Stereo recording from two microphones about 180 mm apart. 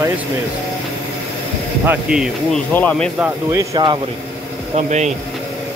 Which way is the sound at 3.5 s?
20° right (ahead or behind).